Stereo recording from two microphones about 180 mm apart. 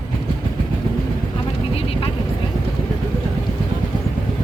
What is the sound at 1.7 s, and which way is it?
Vehicle, 30° left (ahead or behind).